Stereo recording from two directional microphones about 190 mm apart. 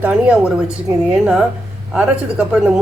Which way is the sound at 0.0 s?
5° right (ahead or behind).